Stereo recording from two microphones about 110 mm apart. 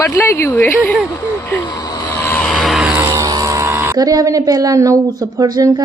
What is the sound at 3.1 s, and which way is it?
A woman's voice, 35° right (ahead or behind).